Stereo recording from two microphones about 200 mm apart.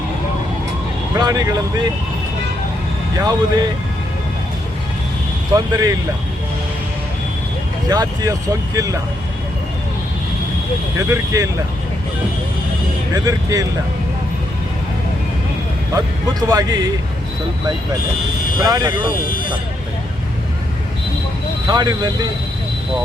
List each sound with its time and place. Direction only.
1.1 s speech: 20° right (ahead or behind)
3.2 s speech: 20° right (ahead or behind)
5.5 s speech: 15° right (ahead or behind)
7.9 s speech: 15° right (ahead or behind)
10.9 s speech: 15° right (ahead or behind)
13.1 s speech: 15° right (ahead or behind)
16.5 s speech: 20° right (ahead or behind)
18.5 s speech: 20° right (ahead or behind)
21.7 s speech: 20° right (ahead or behind)